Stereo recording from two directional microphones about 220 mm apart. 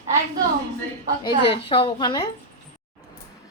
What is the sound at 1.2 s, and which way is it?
A woman's voice, 25° left (ahead or behind).